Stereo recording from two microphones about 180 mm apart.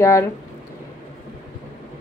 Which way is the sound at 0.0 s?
15° left (ahead or behind).